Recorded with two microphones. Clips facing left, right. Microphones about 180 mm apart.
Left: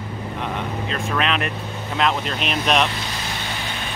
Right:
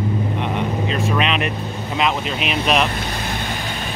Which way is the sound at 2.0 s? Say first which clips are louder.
Right 1 dB; 5° right (ahead or behind).